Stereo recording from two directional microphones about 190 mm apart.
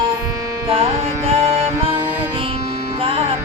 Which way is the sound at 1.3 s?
30° right (ahead or behind).